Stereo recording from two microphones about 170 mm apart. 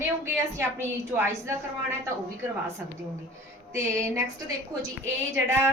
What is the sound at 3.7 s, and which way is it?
Speech, 15° right (ahead or behind).